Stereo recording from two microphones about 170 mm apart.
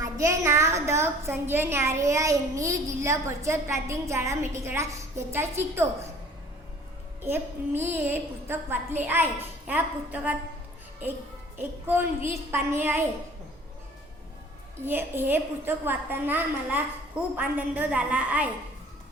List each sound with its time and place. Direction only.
0.0 s a woman's voice: 20° right (ahead or behind)
7.3 s a woman's voice: 10° right (ahead or behind)
11.5 s a woman's voice: 10° right (ahead or behind)
14.8 s a woman's voice: 10° right (ahead or behind)